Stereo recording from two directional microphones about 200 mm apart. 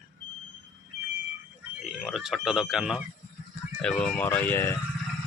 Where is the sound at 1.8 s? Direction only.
Centre (ahead or behind).